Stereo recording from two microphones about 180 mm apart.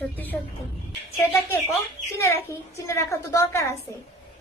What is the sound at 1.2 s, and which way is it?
A woman's voice, 15° left (ahead or behind).